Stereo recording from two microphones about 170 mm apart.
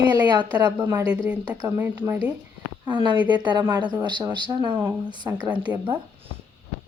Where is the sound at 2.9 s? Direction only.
30° right (ahead or behind).